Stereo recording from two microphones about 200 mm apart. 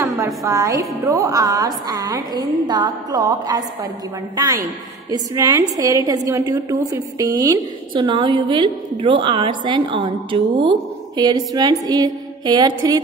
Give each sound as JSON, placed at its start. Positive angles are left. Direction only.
{"t": 0.5, "sound": "a woman's voice", "side_deg": -15}